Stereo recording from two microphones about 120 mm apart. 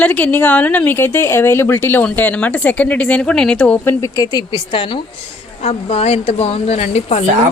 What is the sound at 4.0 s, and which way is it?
Speech, 30° left (ahead or behind).